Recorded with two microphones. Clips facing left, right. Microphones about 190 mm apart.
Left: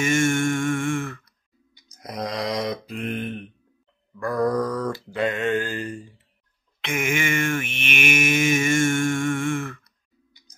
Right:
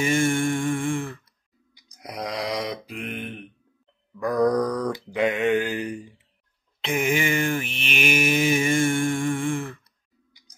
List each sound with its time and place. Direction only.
0.0 s mantra: 30° right (ahead or behind)
1.8 s mantra: 10° right (ahead or behind)
6.8 s livestock: 35° right (ahead or behind)